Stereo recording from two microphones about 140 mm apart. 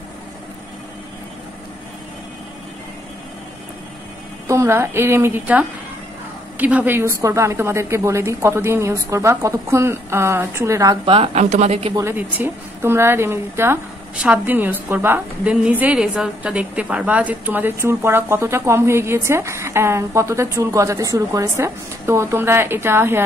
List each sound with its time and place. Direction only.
4.5 s a woman's voice: 20° right (ahead or behind)
11.1 s a woman's voice: 40° right (ahead or behind)
11.9 s a woman's voice: 20° right (ahead or behind)